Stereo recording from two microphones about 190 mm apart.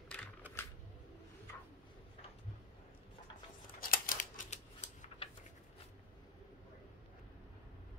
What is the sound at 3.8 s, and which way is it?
Scissors, 50° left (ahead or behind).